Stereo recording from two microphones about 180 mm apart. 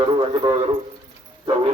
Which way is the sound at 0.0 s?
25° right (ahead or behind).